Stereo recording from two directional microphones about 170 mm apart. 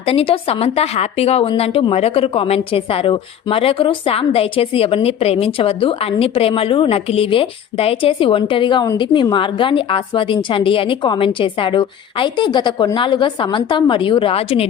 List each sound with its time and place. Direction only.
0.0 s a woman's voice: 35° left (ahead or behind)